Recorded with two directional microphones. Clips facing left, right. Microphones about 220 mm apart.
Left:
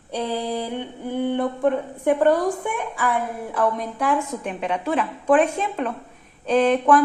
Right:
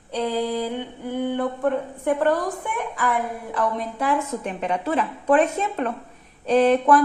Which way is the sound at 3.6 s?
Centre (ahead or behind).